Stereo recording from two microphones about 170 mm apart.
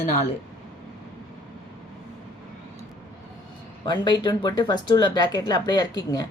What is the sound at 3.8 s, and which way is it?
Speech, 25° left (ahead or behind).